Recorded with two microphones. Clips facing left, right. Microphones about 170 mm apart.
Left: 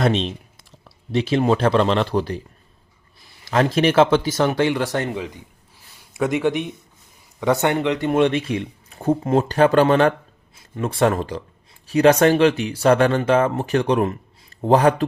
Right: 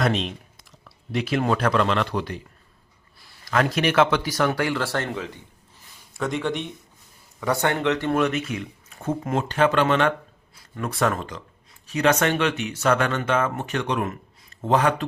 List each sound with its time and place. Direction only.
0.0 s speech: 30° left (ahead or behind)
3.2 s speech: 25° left (ahead or behind)
8.2 s speech: 30° left (ahead or behind)
10.5 s speech: 25° left (ahead or behind)